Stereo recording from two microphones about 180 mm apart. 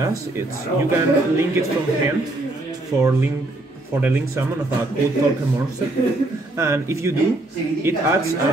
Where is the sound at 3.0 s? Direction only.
15° right (ahead or behind).